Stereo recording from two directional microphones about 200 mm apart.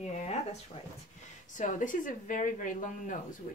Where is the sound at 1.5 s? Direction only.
40° left (ahead or behind).